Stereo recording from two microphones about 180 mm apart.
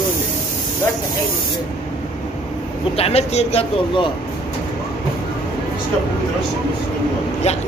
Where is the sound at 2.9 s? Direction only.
35° left (ahead or behind).